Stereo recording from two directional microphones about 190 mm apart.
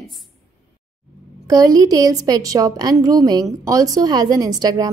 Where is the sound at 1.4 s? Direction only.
20° right (ahead or behind).